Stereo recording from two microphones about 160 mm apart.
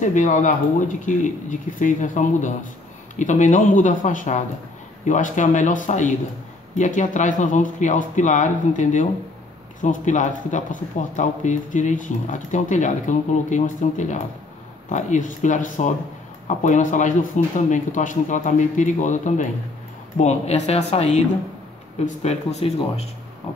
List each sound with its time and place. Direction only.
0.0 s speech: 50° left (ahead or behind)